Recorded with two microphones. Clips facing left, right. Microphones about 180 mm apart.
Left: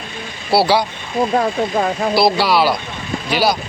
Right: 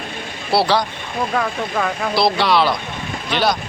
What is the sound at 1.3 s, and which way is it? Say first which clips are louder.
Speech: left 4 dB; 30° left (ahead or behind).